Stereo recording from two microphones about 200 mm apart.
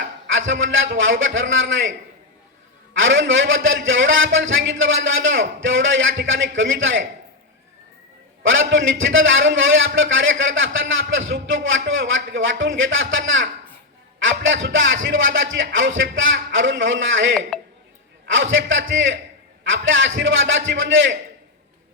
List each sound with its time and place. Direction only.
0.0 s a man's voice: 70° right (ahead or behind)
3.0 s a man's voice: 70° right (ahead or behind)
8.4 s a man's voice: 70° right (ahead or behind)
17.5 s a sound: centre (ahead or behind)
18.3 s a man's voice: 70° right (ahead or behind)